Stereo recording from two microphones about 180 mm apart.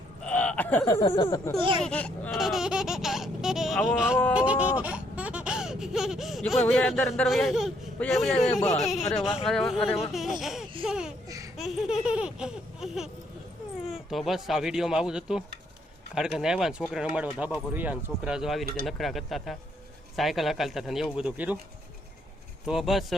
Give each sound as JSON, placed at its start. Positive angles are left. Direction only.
{"t": 0.3, "sound": "a sound", "side_deg": 5}
{"t": 1.2, "sound": "speech", "side_deg": 20}
{"t": 1.8, "sound": "speech", "side_deg": 5}
{"t": 4.4, "sound": "laughter", "side_deg": -5}
{"t": 9.0, "sound": "baby laughter", "side_deg": 0}
{"t": 9.8, "sound": "speech", "side_deg": 35}
{"t": 10.1, "sound": "baby laughter", "side_deg": 0}
{"t": 10.4, "sound": "laughter", "side_deg": 0}
{"t": 10.8, "sound": "baby laughter", "side_deg": -5}
{"t": 11.3, "sound": "laughter", "side_deg": -20}
{"t": 11.5, "sound": "baby laughter", "side_deg": 0}
{"t": 22.6, "sound": "baby laughter", "side_deg": 0}